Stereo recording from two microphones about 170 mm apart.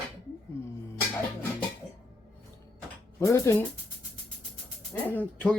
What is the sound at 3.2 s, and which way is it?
Speech, 15° left (ahead or behind).